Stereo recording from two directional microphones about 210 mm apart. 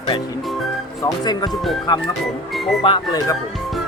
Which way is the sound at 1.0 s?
20° left (ahead or behind).